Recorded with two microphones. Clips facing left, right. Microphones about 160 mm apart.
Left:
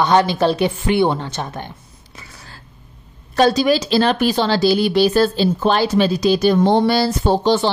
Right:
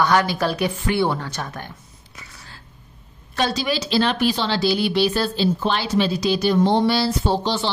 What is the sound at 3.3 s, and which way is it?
A woman's voice, 45° left (ahead or behind).